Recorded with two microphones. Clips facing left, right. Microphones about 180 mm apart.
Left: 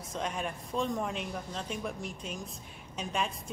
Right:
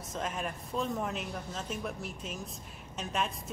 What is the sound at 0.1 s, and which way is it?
Speech, centre (ahead or behind).